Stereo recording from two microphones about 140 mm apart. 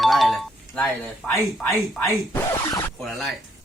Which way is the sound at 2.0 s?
20° left (ahead or behind).